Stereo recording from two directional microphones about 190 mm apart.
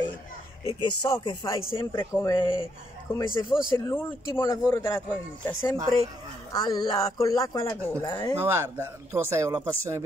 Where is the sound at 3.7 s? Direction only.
15° left (ahead or behind).